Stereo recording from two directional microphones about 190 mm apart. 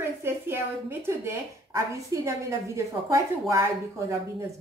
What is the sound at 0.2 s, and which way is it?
A child's voice, 10° right (ahead or behind).